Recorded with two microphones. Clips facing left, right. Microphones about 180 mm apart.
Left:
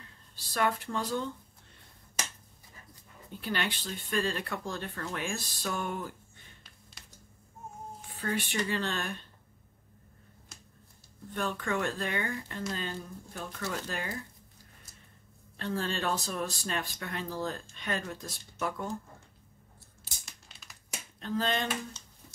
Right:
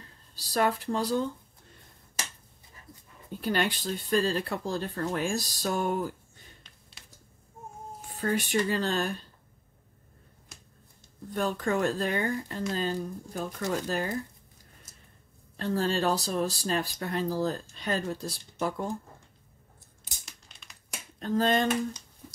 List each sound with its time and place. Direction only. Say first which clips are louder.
0.4 s speech: right 3 dB; 35° right (ahead or behind)
3.3 s speech: right 6 dB; 40° right (ahead or behind)
6.6 s a sound: even; centre (ahead or behind)
8.2 s speech: right 5 dB; 40° right (ahead or behind)
11.2 s speech: right 5 dB; 40° right (ahead or behind)
15.5 s speech: right 5 dB; 40° right (ahead or behind)
20.1 s crumpling: right 1 dB; 15° right (ahead or behind)
21.2 s speech: right 6 dB; 45° right (ahead or behind)